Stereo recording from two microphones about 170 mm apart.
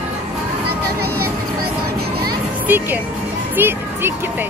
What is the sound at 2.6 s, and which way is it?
Speech, 10° right (ahead or behind).